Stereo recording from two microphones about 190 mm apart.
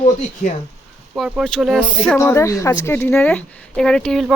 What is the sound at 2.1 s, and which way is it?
Speech, 15° left (ahead or behind).